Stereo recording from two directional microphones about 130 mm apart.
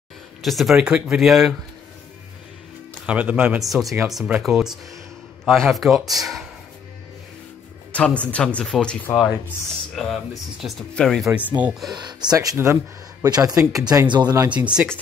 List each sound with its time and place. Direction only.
0.4 s speech: centre (ahead or behind)
3.1 s speech: 10° right (ahead or behind)
3.5 s speech: centre (ahead or behind)
7.9 s speech: 10° left (ahead or behind)
11.9 s speech: 35° right (ahead or behind)
14.5 s speech: 10° right (ahead or behind)